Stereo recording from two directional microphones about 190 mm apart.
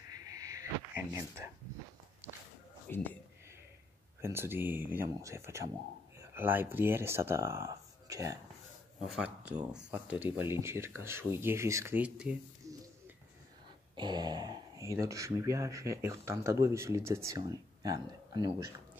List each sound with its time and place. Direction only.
0.1 s a sound: 20° right (ahead or behind)
2.9 s speech: 10° left (ahead or behind)
4.2 s speech: 10° right (ahead or behind)
9.0 s speech: 5° right (ahead or behind)
13.9 s speech: 25° right (ahead or behind)